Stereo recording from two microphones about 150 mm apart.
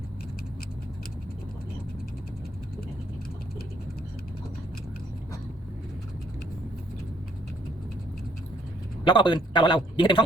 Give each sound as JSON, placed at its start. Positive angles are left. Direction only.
{"t": 9.0, "sound": "a man's voice", "side_deg": 30}